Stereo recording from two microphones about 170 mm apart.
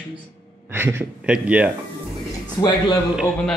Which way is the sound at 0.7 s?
10° right (ahead or behind).